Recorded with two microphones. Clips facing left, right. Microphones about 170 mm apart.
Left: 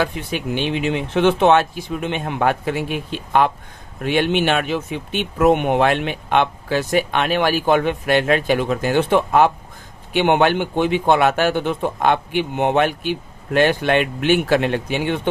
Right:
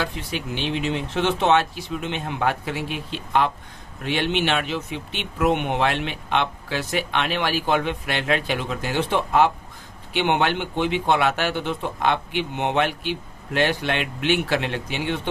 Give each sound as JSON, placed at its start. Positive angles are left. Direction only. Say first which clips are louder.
{"t": 0.0, "sound": "speech", "louder": "left 6 dB", "side_deg": 55}